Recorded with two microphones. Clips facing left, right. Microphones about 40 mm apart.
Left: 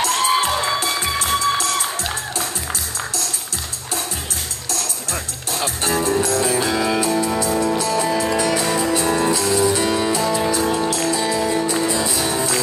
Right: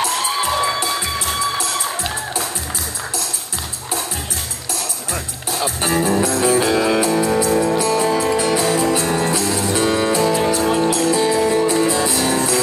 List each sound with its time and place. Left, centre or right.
0.8 s music: centre
1.2 s music: centre
4.7 s music: centre
12.1 s music: centre